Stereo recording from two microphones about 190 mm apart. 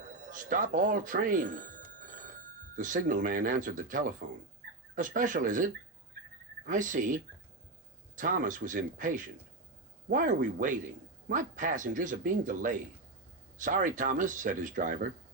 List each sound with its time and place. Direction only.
0.3 s a man's voice: 45° right (ahead or behind)